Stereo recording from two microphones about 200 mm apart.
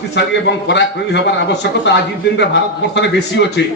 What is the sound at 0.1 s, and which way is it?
A man's voice, 60° left (ahead or behind).